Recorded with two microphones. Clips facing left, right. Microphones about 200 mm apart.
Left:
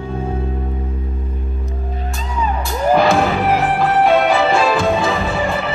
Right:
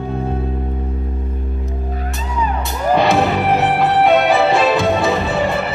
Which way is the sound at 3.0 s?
Centre (ahead or behind).